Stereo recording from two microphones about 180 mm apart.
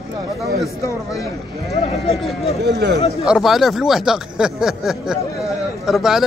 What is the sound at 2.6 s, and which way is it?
Speech, 70° right (ahead or behind).